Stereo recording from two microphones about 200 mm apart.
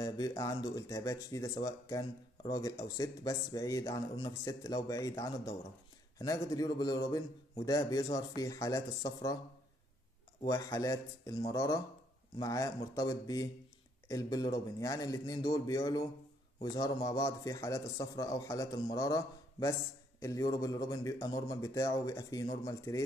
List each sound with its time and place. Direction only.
0.0 s speech: 15° left (ahead or behind)
10.4 s speech: 15° left (ahead or behind)